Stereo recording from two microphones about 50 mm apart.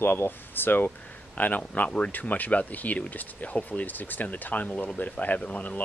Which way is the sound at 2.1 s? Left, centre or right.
Left.